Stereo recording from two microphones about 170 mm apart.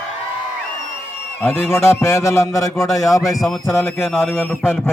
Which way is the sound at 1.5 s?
15° left (ahead or behind).